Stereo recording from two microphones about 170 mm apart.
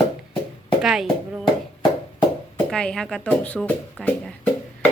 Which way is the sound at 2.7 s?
5° left (ahead or behind).